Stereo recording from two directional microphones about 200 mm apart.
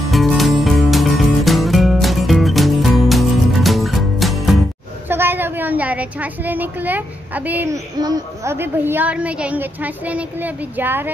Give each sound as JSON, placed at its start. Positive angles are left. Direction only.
{"t": 0.1, "sound": "music", "side_deg": 0}
{"t": 5.1, "sound": "a child's voice", "side_deg": -10}